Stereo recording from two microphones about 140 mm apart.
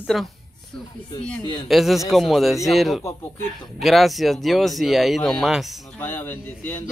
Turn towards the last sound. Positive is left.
turn(degrees=15)  # may be behind; listen again after turning